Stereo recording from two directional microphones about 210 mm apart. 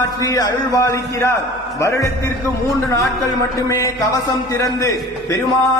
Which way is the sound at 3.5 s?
15° left (ahead or behind).